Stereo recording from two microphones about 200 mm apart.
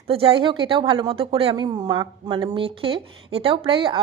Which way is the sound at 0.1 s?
30° right (ahead or behind).